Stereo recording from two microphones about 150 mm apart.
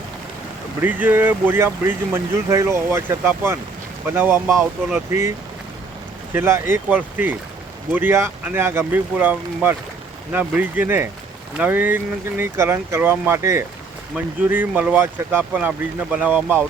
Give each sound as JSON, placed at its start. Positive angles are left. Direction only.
{"t": 0.8, "sound": "speech", "side_deg": -10}
{"t": 6.3, "sound": "speech", "side_deg": -15}